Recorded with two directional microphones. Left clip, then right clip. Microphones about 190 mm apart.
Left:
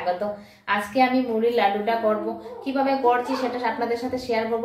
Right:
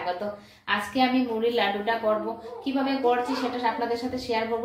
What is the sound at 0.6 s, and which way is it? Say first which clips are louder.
Speech: left 4 dB; centre (ahead or behind).